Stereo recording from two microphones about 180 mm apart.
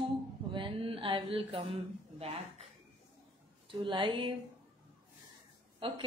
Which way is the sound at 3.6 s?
25° right (ahead or behind).